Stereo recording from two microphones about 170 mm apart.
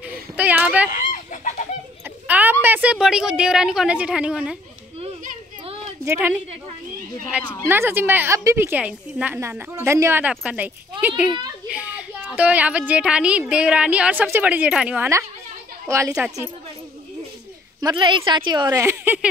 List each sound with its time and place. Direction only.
0.4 s a woman's voice: 10° right (ahead or behind)
0.9 s chicken: 50° left (ahead or behind)
2.2 s a sound: 10° right (ahead or behind)
2.6 s a woman's voice: 10° right (ahead or behind)
6.0 s a woman's voice: 15° right (ahead or behind)
7.6 s a woman's voice: 15° right (ahead or behind)
15.9 s a woman's voice: 15° right (ahead or behind)
17.7 s speech: 25° right (ahead or behind)